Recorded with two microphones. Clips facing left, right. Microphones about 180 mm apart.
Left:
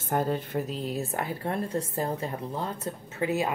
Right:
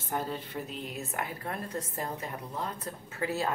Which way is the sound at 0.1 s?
50° left (ahead or behind).